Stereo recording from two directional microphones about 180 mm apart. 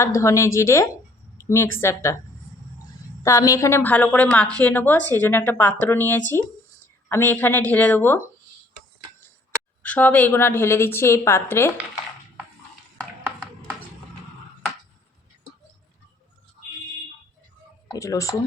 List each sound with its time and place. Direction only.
0.0 s a woman's voice: 15° left (ahead or behind)
3.2 s a woman's voice: 20° left (ahead or behind)
9.8 s a woman's voice: 10° left (ahead or behind)
17.9 s speech: 20° left (ahead or behind)